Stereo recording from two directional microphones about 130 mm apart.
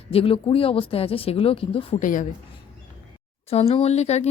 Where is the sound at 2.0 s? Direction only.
90° left.